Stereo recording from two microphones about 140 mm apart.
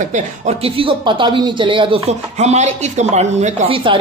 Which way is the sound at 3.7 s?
40° right (ahead or behind).